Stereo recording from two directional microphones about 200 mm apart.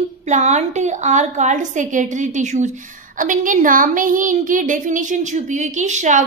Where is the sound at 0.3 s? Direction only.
35° right (ahead or behind).